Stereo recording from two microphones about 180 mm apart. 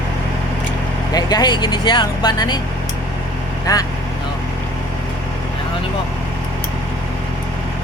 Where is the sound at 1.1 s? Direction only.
20° left (ahead or behind).